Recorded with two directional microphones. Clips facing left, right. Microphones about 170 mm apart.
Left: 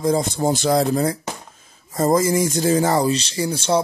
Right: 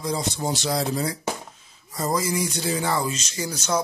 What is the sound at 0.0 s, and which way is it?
Speech, 50° left (ahead or behind).